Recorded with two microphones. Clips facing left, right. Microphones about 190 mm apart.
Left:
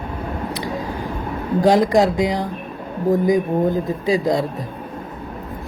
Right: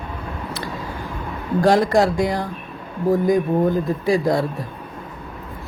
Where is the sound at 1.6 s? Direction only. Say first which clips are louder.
Left 1 dB; 20° left (ahead or behind).